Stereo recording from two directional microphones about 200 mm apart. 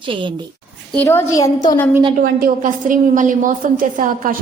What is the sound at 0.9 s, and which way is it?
Speech, 10° left (ahead or behind).